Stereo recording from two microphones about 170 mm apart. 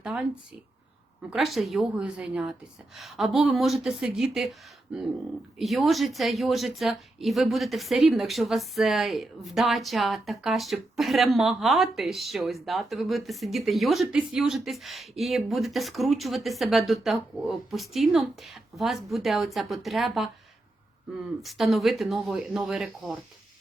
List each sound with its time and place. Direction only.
0.0 s speech: 5° right (ahead or behind)
1.3 s speech: centre (ahead or behind)
5.5 s speech: centre (ahead or behind)
21.4 s speech: centre (ahead or behind)